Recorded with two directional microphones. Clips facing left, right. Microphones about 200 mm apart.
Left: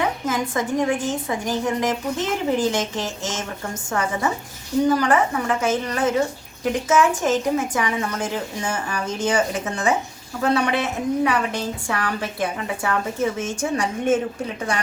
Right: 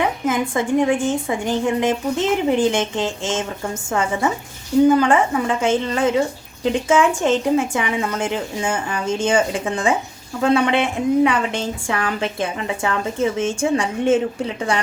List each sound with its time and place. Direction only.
0.3 s a woman's voice: 25° right (ahead or behind)